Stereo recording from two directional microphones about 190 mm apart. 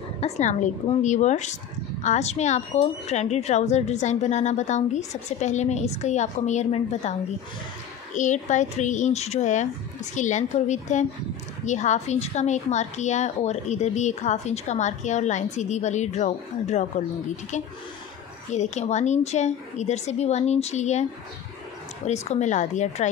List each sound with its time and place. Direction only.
0.2 s a woman's voice: 40° left (ahead or behind)
18.5 s a woman's voice: 35° left (ahead or behind)